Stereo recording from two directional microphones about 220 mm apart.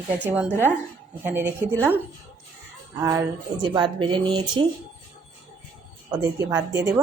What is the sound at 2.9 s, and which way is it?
A woman's voice, 15° right (ahead or behind).